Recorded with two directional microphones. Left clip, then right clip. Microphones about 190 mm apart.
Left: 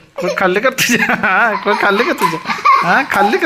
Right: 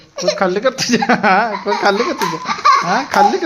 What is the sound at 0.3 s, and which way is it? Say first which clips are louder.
Speech: left 5 dB; 10° left (ahead or behind).